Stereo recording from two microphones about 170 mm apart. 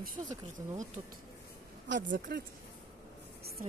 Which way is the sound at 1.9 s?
90° right.